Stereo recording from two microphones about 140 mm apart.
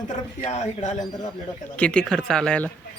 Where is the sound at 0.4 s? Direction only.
55° left (ahead or behind).